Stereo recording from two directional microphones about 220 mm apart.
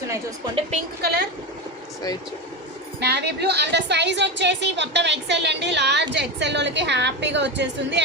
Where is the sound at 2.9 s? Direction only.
50° right (ahead or behind).